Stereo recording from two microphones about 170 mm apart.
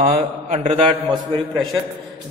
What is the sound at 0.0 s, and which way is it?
Speech, 35° right (ahead or behind).